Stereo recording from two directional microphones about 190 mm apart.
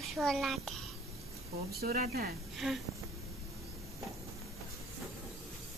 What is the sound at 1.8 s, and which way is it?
Speech, 50° right (ahead or behind).